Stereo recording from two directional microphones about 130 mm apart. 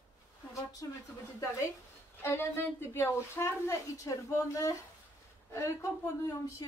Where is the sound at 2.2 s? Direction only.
20° left (ahead or behind).